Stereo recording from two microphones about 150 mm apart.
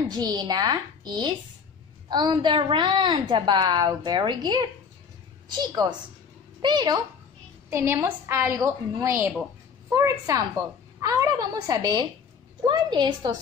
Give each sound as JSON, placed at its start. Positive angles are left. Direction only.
{"t": 0.2, "sound": "a woman's voice", "side_deg": -30}
{"t": 7.7, "sound": "a woman's voice", "side_deg": -15}